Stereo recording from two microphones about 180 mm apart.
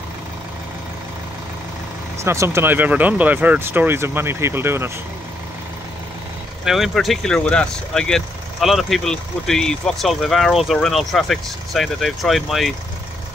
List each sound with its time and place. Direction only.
2.2 s speech: 15° right (ahead or behind)
6.6 s speech: centre (ahead or behind)